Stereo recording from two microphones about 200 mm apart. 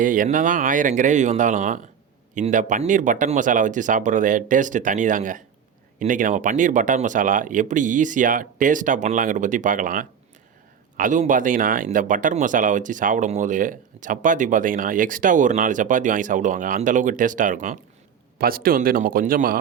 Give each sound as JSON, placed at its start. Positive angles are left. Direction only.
{"t": 0.0, "sound": "speech", "side_deg": -40}